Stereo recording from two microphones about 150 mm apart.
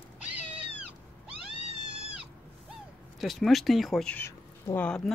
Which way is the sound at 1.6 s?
40° right (ahead or behind).